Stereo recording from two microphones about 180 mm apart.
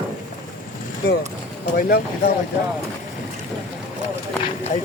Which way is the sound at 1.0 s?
60° left (ahead or behind).